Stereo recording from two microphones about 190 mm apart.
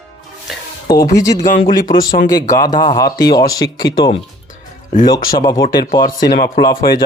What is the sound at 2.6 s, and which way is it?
Speech, 20° left (ahead or behind).